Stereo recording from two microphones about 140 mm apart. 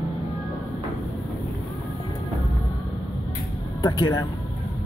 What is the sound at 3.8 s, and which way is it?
Speech, 30° left (ahead or behind).